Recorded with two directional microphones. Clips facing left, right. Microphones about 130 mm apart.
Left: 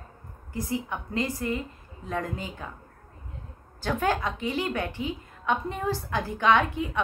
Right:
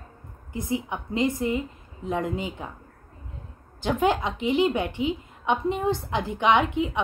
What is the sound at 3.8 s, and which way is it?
A woman's voice, 20° right (ahead or behind).